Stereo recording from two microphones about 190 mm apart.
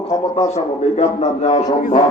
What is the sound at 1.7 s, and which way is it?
Speech, 45° left (ahead or behind).